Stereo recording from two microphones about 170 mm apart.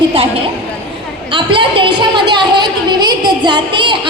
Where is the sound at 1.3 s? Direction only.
30° right (ahead or behind).